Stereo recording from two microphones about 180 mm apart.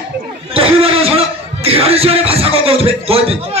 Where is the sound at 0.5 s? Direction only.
30° right (ahead or behind).